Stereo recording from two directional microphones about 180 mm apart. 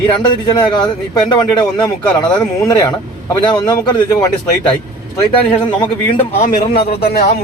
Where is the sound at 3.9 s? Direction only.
20° left (ahead or behind).